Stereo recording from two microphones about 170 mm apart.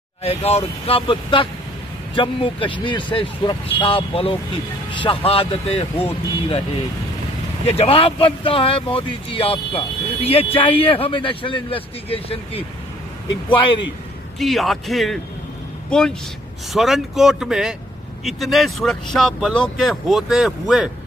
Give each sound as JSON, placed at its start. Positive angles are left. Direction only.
{"t": 0.2, "sound": "speech", "side_deg": 35}
{"t": 7.6, "sound": "speech", "side_deg": 35}
{"t": 14.4, "sound": "speech", "side_deg": 0}